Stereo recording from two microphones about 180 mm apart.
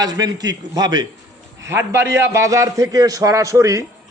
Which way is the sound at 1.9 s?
80° right.